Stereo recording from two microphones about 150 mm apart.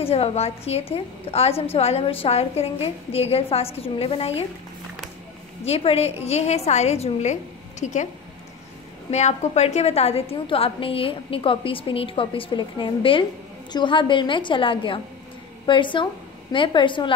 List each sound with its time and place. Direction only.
0.0 s a woman's voice: 40° left (ahead or behind)
5.7 s a woman's voice: 40° left (ahead or behind)
9.1 s a woman's voice: 50° left (ahead or behind); by 17.1 s 30° left (ahead or behind)